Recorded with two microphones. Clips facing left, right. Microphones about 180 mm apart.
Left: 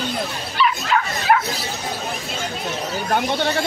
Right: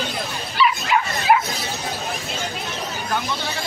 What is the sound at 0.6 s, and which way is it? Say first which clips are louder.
Dog: even; 5° right (ahead or behind).